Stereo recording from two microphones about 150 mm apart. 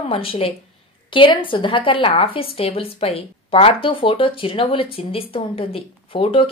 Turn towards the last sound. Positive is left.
turn(degrees=35)  # may be behind; listen again after turning